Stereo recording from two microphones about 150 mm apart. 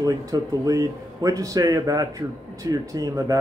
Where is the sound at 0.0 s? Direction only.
25° right (ahead or behind).